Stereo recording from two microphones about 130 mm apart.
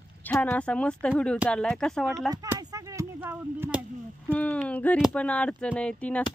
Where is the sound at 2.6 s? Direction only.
25° right (ahead or behind).